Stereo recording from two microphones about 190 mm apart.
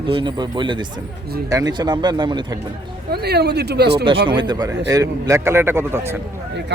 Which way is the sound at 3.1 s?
60° right (ahead or behind).